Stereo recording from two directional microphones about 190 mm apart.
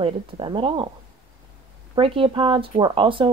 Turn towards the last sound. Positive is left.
turn(degrees=-25)  # may be behind; listen again after turning